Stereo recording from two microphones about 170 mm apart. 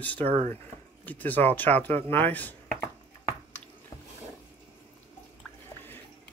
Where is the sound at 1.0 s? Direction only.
10° left (ahead or behind).